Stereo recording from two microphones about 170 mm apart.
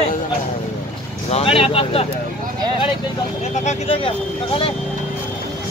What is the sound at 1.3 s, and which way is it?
Vehicle, 35° left (ahead or behind).